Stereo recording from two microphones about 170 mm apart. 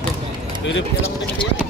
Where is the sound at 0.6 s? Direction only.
90° left.